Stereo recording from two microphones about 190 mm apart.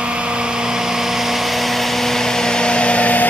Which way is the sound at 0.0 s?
5° right (ahead or behind).